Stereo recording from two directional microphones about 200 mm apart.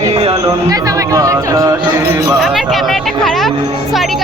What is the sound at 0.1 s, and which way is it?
Music, 30° right (ahead or behind).